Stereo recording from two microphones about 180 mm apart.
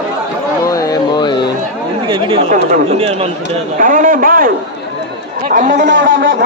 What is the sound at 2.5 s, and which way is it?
Speech, 45° right (ahead or behind).